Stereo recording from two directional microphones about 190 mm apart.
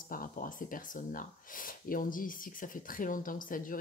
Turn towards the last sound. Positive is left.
turn(degrees=45)  # may be behind; listen again after turning